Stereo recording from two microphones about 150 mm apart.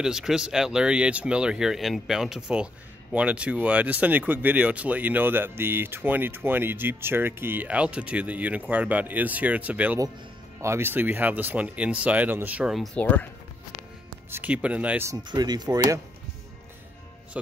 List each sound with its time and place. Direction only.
0.0 s speech: 5° right (ahead or behind)
14.3 s speech: 10° right (ahead or behind)
15.2 s speech: 30° right (ahead or behind)